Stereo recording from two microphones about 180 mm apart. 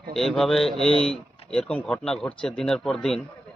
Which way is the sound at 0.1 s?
Centre (ahead or behind).